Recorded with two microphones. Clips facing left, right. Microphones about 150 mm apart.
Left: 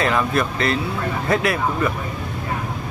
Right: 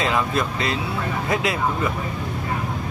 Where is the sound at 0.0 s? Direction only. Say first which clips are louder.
Left 2 dB; 20° right (ahead or behind).